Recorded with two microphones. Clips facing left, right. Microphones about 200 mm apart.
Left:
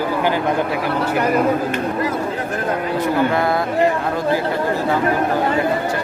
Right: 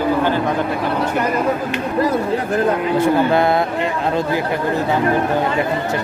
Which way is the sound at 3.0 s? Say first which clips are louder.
Right 2 dB; 30° right (ahead or behind).